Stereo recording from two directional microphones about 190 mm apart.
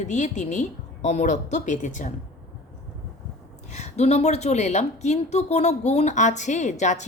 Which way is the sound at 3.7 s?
35° left (ahead or behind).